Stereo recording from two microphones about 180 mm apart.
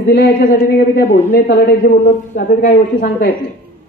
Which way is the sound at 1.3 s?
70° left (ahead or behind).